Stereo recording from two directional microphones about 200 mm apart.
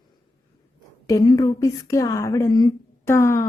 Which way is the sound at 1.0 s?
15° left (ahead or behind).